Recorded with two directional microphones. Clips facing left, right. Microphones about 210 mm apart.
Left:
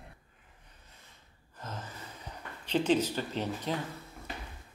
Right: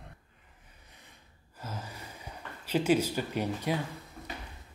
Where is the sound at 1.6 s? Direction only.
10° right (ahead or behind).